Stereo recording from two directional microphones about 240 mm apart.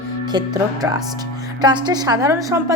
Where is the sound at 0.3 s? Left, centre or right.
Centre.